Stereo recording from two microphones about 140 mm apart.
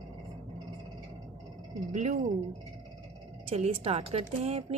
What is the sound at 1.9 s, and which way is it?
Speech, 55° right (ahead or behind).